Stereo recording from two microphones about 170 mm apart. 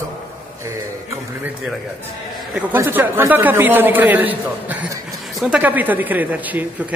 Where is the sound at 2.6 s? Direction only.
10° right (ahead or behind).